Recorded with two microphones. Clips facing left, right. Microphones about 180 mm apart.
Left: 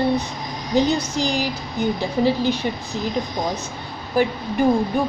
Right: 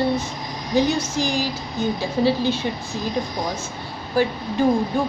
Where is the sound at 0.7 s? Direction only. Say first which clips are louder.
Left 1 dB; 15° left (ahead or behind).